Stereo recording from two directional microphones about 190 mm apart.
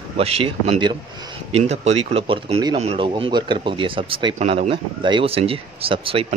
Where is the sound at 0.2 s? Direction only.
30° right (ahead or behind).